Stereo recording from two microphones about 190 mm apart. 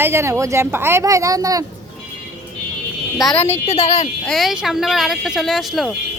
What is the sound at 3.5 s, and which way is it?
Speech, 35° left (ahead or behind).